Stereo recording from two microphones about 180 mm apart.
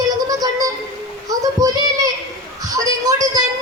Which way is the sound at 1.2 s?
20° right (ahead or behind).